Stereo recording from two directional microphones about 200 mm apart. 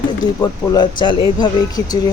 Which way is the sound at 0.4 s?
20° left (ahead or behind).